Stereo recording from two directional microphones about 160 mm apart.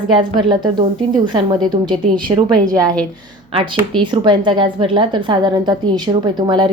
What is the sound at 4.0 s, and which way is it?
A woman's voice, 30° right (ahead or behind).